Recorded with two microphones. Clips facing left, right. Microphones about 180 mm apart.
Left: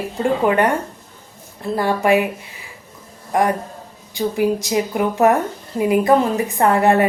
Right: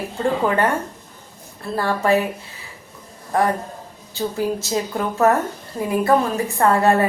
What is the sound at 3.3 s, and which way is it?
Speech, 15° left (ahead or behind).